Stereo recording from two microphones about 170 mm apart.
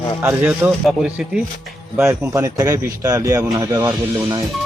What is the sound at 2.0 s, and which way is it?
Speech, 20° right (ahead or behind).